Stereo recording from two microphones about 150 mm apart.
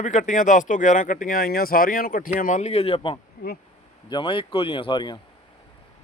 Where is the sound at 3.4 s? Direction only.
75° left (ahead or behind).